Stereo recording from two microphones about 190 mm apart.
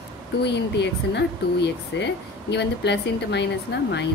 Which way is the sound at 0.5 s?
65° left (ahead or behind).